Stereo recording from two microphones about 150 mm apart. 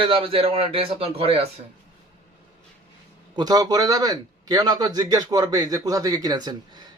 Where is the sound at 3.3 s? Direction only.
25° right (ahead or behind).